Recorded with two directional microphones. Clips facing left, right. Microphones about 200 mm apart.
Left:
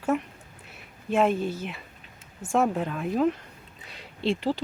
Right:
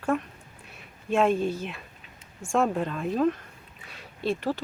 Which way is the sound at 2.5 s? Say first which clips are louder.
Even; 5° left (ahead or behind).